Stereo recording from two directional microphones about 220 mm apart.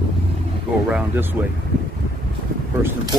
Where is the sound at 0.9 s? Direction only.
10° right (ahead or behind).